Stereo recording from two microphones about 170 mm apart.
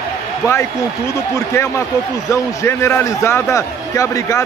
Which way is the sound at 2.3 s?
15° left (ahead or behind).